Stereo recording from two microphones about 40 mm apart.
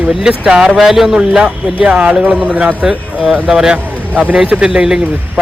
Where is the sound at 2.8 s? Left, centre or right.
Centre.